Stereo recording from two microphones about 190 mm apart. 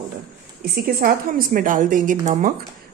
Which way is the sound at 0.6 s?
50° right (ahead or behind).